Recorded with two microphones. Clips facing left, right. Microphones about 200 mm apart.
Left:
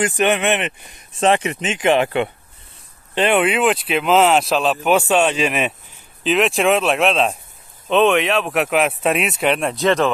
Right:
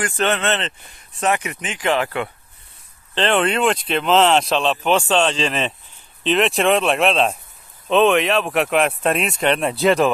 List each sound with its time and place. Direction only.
0.0 s speech: 15° left (ahead or behind)
3.2 s speech: 10° left (ahead or behind); by 10.1 s 10° right (ahead or behind)